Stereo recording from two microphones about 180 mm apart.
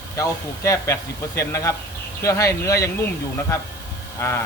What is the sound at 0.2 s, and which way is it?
A man's voice, 15° left (ahead or behind).